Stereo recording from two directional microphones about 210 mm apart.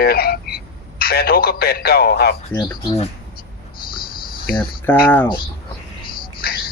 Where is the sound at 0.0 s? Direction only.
45° left (ahead or behind).